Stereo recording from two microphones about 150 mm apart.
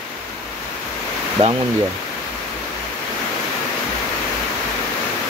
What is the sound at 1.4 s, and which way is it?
Speech, 40° right (ahead or behind).